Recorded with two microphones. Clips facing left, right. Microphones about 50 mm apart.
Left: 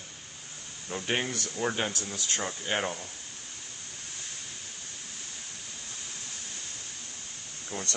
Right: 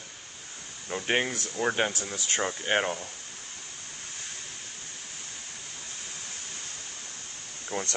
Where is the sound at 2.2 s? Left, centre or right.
Right.